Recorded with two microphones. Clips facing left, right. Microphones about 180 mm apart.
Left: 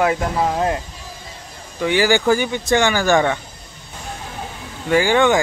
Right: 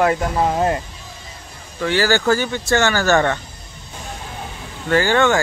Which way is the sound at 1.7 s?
15° left (ahead or behind).